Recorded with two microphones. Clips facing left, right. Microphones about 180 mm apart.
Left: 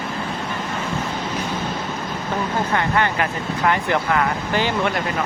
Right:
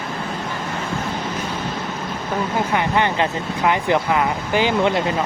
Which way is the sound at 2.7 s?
20° right (ahead or behind).